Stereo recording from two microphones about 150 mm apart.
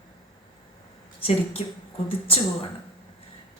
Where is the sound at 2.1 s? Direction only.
40° left (ahead or behind).